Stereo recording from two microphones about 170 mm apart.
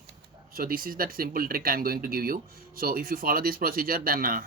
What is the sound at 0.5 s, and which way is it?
Speech, 60° right (ahead or behind).